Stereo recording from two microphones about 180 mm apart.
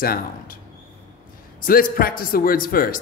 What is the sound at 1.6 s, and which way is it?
A man's voice, 55° left (ahead or behind).